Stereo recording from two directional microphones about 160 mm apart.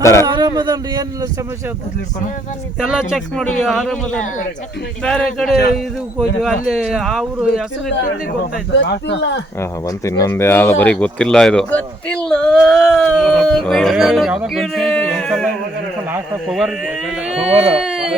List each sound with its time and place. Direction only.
0.0 s speech: 20° left (ahead or behind)
0.3 s a man's voice: 25° right (ahead or behind)
2.8 s speech: 5° right (ahead or behind)
8.7 s speech: 90° left
9.6 s speech: 20° left (ahead or behind); by 15.4 s centre (ahead or behind)
16.5 s speech: 5° right (ahead or behind)
17.5 s speech: 35° right (ahead or behind)
17.8 s a sound: 5° right (ahead or behind)